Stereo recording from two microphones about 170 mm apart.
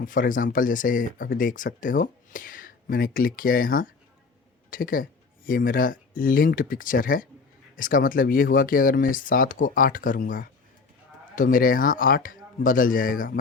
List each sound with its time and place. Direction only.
0.0 s speech: 55° left (ahead or behind)